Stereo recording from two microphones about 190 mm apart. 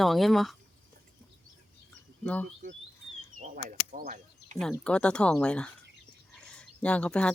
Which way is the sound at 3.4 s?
45° right (ahead or behind).